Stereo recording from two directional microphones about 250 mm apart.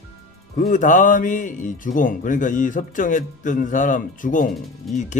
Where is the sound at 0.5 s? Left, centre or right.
Left.